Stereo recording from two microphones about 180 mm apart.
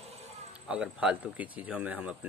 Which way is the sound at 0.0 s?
35° right (ahead or behind).